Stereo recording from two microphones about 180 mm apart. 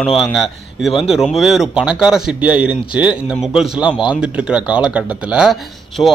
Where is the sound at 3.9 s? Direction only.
25° left (ahead or behind).